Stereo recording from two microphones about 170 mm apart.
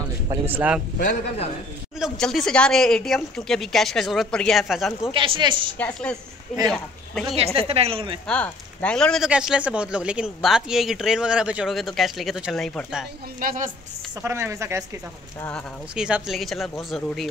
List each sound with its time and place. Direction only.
0.5 s a woman's voice: 10° right (ahead or behind)
2.0 s speech: centre (ahead or behind)
5.1 s a woman's voice: 30° right (ahead or behind)
5.8 s a woman's voice: 5° left (ahead or behind)
7.3 s a woman's voice: 35° right (ahead or behind)
8.3 s speech: 5° left (ahead or behind)
13.4 s a woman's voice: 55° right (ahead or behind)
14.2 s a woman's voice: 15° right (ahead or behind)
15.9 s speech: 5° right (ahead or behind)